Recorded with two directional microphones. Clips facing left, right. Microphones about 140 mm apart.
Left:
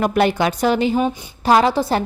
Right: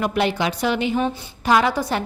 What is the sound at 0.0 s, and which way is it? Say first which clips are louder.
A woman's voice: left 4 dB; 45° left (ahead or behind).